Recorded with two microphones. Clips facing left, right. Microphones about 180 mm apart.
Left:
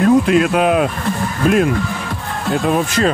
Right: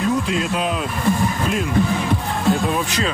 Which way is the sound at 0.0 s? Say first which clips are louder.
Left 9 dB; 60° left (ahead or behind).